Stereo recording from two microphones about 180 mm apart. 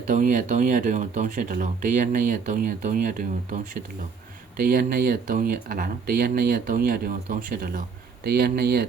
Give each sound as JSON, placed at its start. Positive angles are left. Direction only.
{"t": 0.1, "sound": "speech", "side_deg": -45}